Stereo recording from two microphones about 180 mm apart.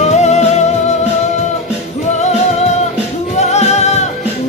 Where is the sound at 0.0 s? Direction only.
40° left (ahead or behind).